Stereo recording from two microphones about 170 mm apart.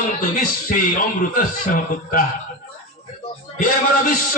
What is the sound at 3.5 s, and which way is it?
Speech, 55° left (ahead or behind).